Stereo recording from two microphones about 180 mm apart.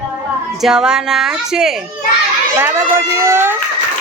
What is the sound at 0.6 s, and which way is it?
Speech, 5° right (ahead or behind).